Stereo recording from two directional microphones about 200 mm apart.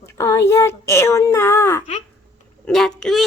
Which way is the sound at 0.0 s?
15° left (ahead or behind).